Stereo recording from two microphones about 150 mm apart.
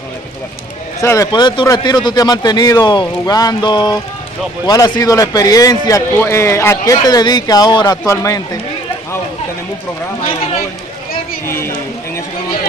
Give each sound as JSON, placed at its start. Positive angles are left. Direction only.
{"t": 1.0, "sound": "a man's voice", "side_deg": 20}
{"t": 11.4, "sound": "speech", "side_deg": 20}